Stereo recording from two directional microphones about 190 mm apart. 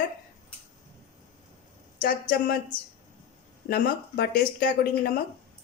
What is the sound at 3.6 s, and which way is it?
Speech, 50° left (ahead or behind).